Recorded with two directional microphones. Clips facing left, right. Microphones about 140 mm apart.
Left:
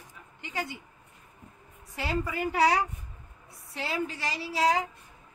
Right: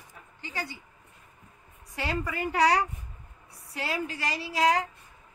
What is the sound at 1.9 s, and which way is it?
A woman's voice, centre (ahead or behind).